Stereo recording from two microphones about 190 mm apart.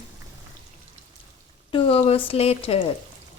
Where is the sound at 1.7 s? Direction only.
30° left (ahead or behind).